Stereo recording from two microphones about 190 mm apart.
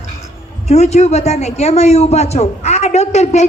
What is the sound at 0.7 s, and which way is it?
A man's voice, 35° left (ahead or behind).